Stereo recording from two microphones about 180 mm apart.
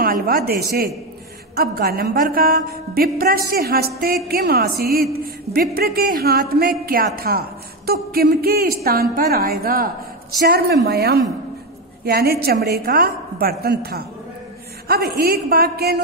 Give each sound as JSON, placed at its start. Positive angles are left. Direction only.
{"t": 0.0, "sound": "a woman's voice", "side_deg": -55}